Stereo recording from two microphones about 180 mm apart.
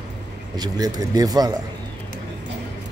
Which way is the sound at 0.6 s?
20° right (ahead or behind).